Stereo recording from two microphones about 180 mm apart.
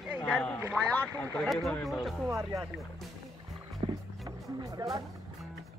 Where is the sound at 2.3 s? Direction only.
15° right (ahead or behind).